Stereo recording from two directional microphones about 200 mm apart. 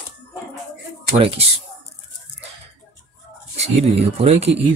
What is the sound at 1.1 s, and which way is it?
Speech, 30° right (ahead or behind).